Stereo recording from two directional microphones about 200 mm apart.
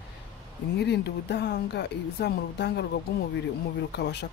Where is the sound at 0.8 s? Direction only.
55° left (ahead or behind).